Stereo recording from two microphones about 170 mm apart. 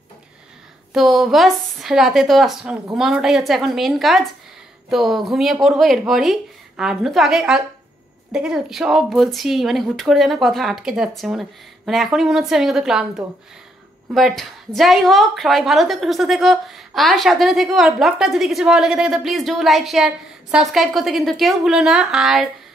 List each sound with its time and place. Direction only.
0.9 s a woman's voice: centre (ahead or behind)